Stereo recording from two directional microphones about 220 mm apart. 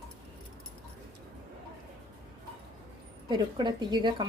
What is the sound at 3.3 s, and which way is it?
Speech, 20° right (ahead or behind).